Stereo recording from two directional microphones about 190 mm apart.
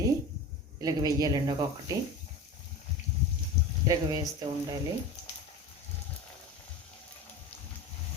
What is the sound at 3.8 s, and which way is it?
Speech, 20° right (ahead or behind).